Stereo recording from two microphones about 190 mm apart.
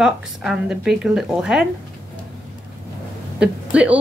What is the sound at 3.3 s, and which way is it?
Speech, 5° right (ahead or behind).